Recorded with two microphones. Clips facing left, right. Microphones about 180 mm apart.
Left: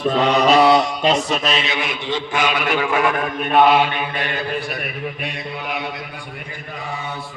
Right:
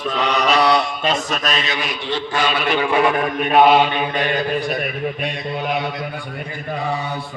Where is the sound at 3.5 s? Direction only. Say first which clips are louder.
Right 1 dB; 20° right (ahead or behind).